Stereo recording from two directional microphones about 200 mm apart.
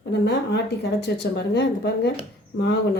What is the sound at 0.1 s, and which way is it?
Speech, 60° left (ahead or behind).